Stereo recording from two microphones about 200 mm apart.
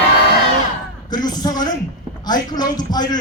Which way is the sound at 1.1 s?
20° left (ahead or behind).